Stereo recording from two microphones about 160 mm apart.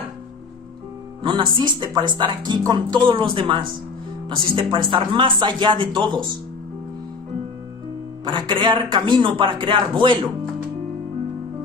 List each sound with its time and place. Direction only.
1.2 s speech: 30° right (ahead or behind)
8.3 s speech: 30° right (ahead or behind)